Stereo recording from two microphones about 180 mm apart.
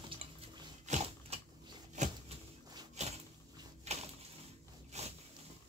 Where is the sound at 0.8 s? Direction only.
40° right (ahead or behind).